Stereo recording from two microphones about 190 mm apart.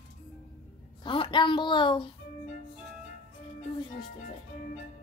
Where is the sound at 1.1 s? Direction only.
25° left (ahead or behind).